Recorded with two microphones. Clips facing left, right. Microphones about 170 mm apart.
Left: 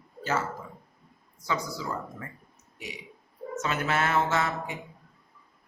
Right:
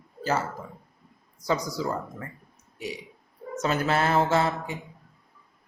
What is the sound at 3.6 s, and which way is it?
Speech, 35° right (ahead or behind).